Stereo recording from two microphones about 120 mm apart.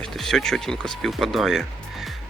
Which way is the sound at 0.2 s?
5° left (ahead or behind).